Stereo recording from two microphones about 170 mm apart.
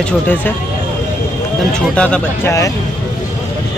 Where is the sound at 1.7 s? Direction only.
5° left (ahead or behind).